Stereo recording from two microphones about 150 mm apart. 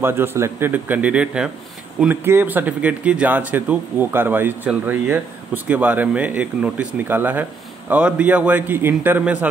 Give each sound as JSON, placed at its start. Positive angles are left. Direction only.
{"t": 0.0, "sound": "speech", "side_deg": -15}